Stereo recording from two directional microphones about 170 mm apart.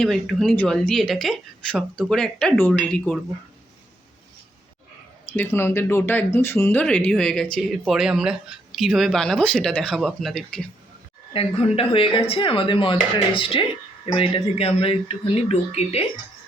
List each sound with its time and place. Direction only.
0.0 s speech: centre (ahead or behind)
5.4 s speech: 15° left (ahead or behind)
11.3 s speech: 35° left (ahead or behind)